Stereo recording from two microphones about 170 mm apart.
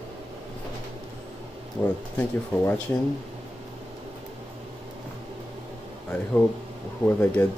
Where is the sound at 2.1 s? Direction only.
15° left (ahead or behind).